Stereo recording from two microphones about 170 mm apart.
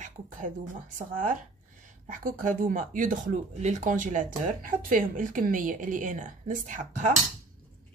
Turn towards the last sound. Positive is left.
turn(degrees=-50)  # may be behind; listen again after turning